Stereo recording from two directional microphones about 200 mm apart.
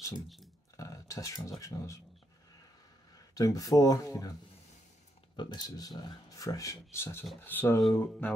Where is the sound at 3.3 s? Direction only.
20° left (ahead or behind).